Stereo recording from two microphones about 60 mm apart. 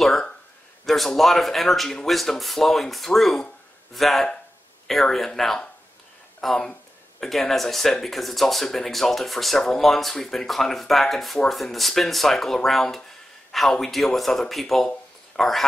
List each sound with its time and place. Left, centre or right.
0.0 s speech: centre